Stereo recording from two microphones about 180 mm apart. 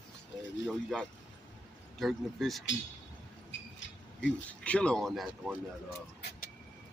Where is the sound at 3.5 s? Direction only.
90° left.